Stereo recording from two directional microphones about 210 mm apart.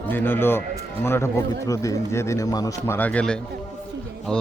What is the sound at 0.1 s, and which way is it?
A man's voice, 10° left (ahead or behind).